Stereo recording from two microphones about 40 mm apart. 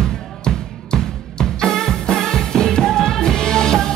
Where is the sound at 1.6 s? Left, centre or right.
Centre.